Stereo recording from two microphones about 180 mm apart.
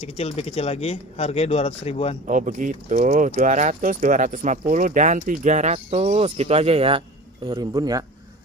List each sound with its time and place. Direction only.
0.0 s speech: 35° left (ahead or behind)
2.2 s speech: 45° right (ahead or behind); by 8.0 s 20° right (ahead or behind)